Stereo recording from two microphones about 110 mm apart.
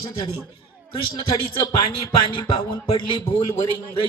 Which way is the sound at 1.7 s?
45° left (ahead or behind).